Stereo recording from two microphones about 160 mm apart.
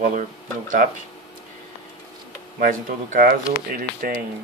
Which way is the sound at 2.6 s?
60° right (ahead or behind).